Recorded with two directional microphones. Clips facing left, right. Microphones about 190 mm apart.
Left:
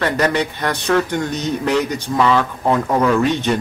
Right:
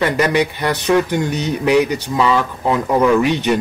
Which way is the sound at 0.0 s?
15° right (ahead or behind).